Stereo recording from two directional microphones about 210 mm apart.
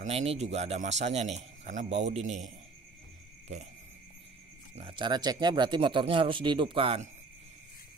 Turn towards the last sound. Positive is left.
turn(degrees=-25)  # may be behind; listen again after turning